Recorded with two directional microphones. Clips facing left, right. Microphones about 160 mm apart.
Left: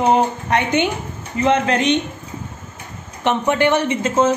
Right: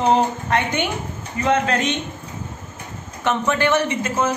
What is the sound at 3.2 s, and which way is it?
A woman's voice, 20° left (ahead or behind).